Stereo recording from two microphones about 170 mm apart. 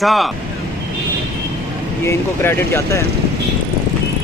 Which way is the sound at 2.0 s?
15° left (ahead or behind).